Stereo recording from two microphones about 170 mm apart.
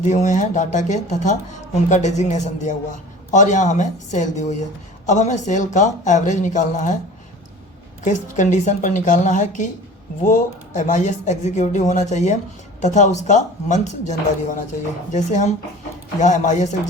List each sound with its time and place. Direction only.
0.0 s speech: 45° left (ahead or behind)
8.0 s speech: 45° left (ahead or behind)